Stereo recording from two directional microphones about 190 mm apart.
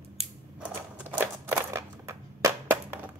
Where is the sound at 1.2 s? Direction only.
10° right (ahead or behind).